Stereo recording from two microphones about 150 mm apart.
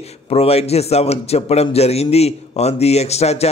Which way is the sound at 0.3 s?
45° left (ahead or behind).